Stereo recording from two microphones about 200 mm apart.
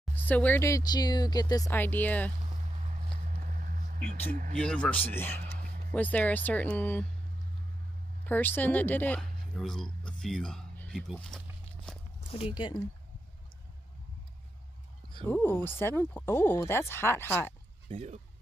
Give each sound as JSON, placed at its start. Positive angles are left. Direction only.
{"t": 0.1, "sound": "speech", "side_deg": 10}
{"t": 2.8, "sound": "vehicle", "side_deg": -35}
{"t": 4.6, "sound": "speech", "side_deg": 5}
{"t": 8.3, "sound": "speech", "side_deg": 10}
{"t": 10.0, "sound": "a sound", "side_deg": 5}
{"t": 12.5, "sound": "speech", "side_deg": 20}
{"t": 15.2, "sound": "speech", "side_deg": 10}
{"t": 17.8, "sound": "speech", "side_deg": -35}